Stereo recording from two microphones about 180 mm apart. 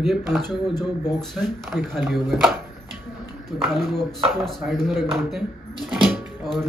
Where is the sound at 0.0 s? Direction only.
Centre (ahead or behind).